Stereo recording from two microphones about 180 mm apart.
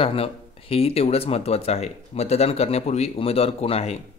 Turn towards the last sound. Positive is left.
turn(degrees=35)  # may be behind; listen again after turning